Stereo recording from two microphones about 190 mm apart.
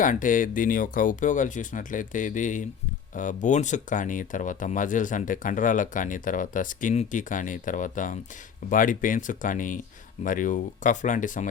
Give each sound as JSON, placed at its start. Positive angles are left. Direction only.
{"t": 0.0, "sound": "speech", "side_deg": 45}